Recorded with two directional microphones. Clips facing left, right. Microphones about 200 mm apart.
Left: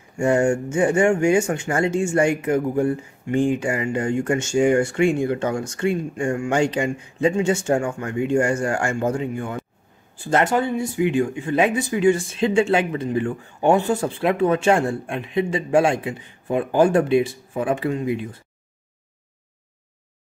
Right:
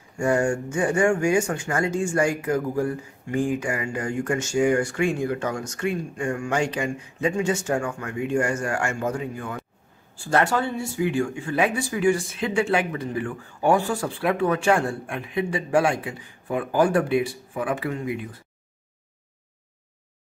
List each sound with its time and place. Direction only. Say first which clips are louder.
0.2 s speech: left 4 dB; 25° left (ahead or behind)